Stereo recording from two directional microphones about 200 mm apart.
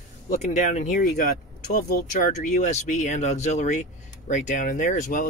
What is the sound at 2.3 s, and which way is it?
Speech, 35° left (ahead or behind).